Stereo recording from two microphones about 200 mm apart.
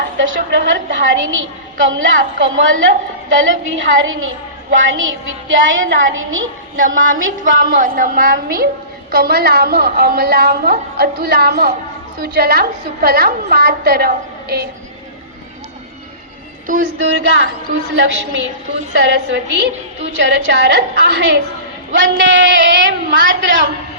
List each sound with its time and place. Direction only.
0.2 s a woman's voice: 65° right (ahead or behind)
6.7 s a woman's voice: 40° right (ahead or behind)
7.2 s a woman's voice: 70° right (ahead or behind)
7.7 s a woman's voice: 45° right (ahead or behind)
16.6 s a woman's voice: 40° right (ahead or behind)
17.0 s a woman's voice: 65° right (ahead or behind)